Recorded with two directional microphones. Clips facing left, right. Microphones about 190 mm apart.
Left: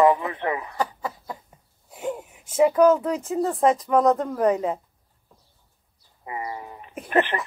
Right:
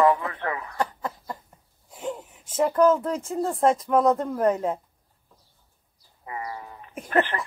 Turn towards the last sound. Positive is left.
turn(degrees=15)  # may be behind; listen again after turning